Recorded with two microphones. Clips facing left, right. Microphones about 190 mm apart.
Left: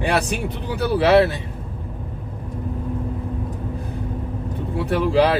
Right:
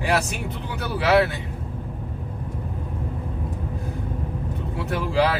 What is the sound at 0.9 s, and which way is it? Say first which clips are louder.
Speech: left 4 dB; 40° left (ahead or behind).